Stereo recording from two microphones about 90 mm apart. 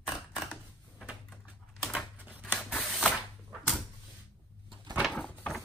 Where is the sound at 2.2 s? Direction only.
20° right (ahead or behind).